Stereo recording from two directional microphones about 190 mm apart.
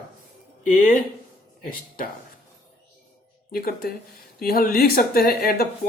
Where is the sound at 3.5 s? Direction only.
55° left (ahead or behind).